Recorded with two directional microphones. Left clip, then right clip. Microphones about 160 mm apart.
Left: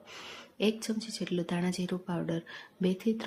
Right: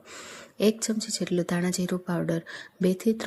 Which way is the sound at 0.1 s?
15° right (ahead or behind).